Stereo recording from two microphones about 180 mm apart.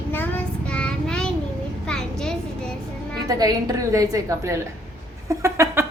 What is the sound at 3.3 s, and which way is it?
A woman's voice, 20° right (ahead or behind).